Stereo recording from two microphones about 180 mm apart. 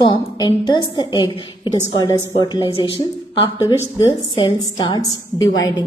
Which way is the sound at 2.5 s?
25° left (ahead or behind).